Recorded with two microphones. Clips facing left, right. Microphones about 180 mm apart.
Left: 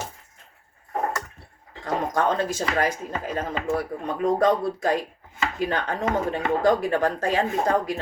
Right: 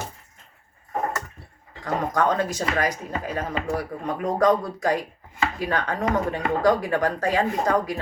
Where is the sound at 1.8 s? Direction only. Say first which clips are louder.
Right 1 dB; 30° left (ahead or behind).